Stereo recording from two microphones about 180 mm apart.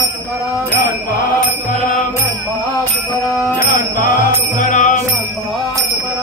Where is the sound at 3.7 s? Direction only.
50° left (ahead or behind).